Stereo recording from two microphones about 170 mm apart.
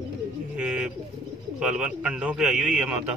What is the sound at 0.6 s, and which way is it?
Bird, 5° right (ahead or behind).